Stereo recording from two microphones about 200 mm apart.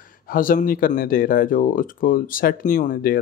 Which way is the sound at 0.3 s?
45° left (ahead or behind).